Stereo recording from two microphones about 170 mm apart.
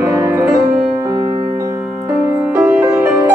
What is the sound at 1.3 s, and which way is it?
Music, 35° right (ahead or behind).